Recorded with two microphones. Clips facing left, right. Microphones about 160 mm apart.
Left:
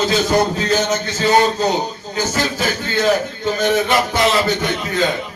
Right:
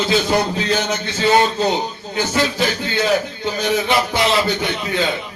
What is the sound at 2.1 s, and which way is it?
A man's voice, 45° left (ahead or behind).